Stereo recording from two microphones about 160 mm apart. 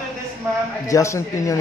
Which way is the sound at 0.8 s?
20° left (ahead or behind).